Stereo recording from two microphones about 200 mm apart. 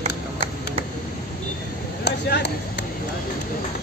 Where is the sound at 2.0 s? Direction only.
55° left (ahead or behind).